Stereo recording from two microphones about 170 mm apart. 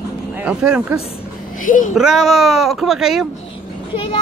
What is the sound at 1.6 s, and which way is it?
Speech, 50° left (ahead or behind).